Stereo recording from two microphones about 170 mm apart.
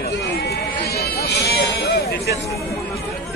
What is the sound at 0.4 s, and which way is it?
Sheep, 70° left (ahead or behind).